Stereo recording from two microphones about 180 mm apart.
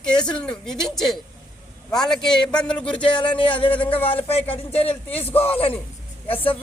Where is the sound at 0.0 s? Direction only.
5° left (ahead or behind).